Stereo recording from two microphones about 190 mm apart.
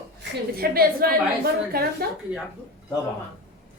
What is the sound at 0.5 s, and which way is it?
Speech, 50° right (ahead or behind).